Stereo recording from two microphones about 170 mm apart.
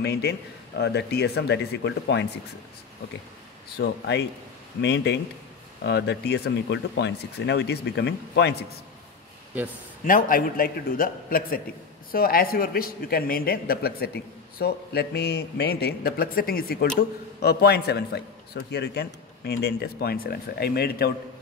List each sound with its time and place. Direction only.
0.0 s a man's voice: 75° left (ahead or behind)
3.7 s a man's voice: 75° left (ahead or behind)
4.8 s speech: 90° left
10.0 s a man's voice: 55° left (ahead or behind)